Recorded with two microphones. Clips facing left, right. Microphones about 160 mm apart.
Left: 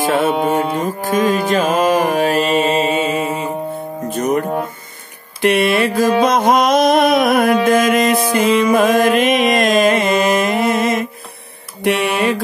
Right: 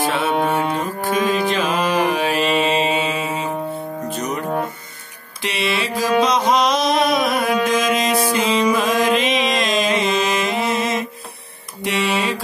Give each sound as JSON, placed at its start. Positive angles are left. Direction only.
{"t": 0.0, "sound": "music", "side_deg": 45}
{"t": 1.5, "sound": "mantra", "side_deg": 45}
{"t": 4.1, "sound": "music", "side_deg": 50}
{"t": 5.4, "sound": "mantra", "side_deg": 55}
{"t": 7.6, "sound": "music", "side_deg": 55}
{"t": 11.8, "sound": "mantra", "side_deg": 55}